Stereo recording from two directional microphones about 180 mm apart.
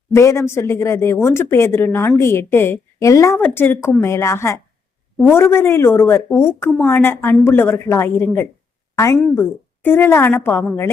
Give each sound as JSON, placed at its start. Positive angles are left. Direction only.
{"t": 0.1, "sound": "a woman's voice", "side_deg": 15}